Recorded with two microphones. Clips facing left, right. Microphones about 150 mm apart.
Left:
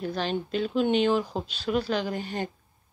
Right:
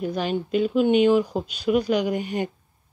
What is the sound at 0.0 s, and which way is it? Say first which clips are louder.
Speech: right 4 dB; 10° right (ahead or behind).